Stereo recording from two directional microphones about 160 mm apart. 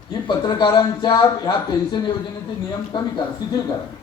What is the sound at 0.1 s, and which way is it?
Speech, 30° left (ahead or behind).